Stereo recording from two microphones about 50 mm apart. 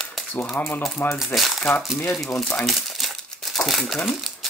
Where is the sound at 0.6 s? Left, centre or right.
Left.